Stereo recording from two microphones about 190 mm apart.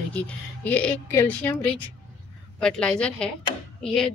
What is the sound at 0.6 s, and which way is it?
A woman's voice, 10° left (ahead or behind).